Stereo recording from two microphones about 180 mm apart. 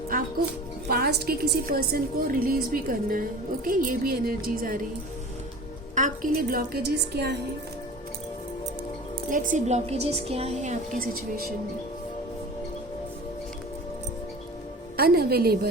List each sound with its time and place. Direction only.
0.9 s a woman's voice: 60° right (ahead or behind)
5.9 s a woman's voice: 45° right (ahead or behind); by 7.3 s 65° right (ahead or behind)
9.3 s a woman's voice: 45° right (ahead or behind)
14.9 s a woman's voice: 60° right (ahead or behind)